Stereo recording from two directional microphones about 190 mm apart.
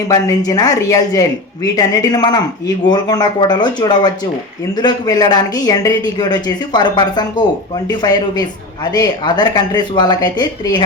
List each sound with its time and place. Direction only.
0.1 s speech: 20° left (ahead or behind)